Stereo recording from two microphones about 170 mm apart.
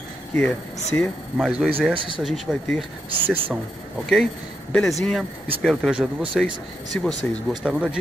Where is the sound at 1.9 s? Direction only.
30° right (ahead or behind).